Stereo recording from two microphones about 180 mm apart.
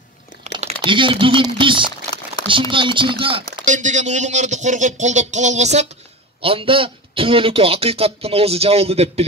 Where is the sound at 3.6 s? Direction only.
45° right (ahead or behind).